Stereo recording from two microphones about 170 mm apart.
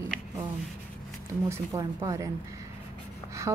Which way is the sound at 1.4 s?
20° right (ahead or behind).